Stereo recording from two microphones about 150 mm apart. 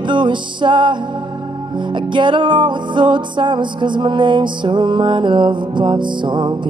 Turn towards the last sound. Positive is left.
turn(degrees=-30)  # may be behind; listen again after turning